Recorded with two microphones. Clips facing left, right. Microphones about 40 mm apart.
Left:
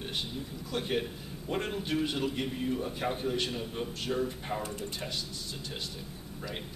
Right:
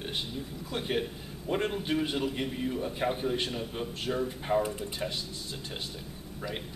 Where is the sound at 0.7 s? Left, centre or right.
Centre.